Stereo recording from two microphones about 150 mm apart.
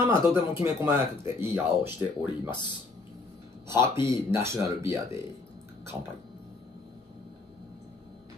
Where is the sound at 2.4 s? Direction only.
30° left (ahead or behind).